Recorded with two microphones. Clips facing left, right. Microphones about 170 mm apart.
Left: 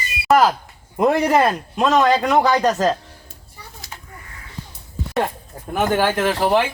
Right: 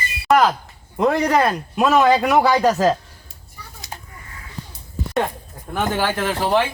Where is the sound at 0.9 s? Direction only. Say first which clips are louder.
Left 1 dB; 5° left (ahead or behind).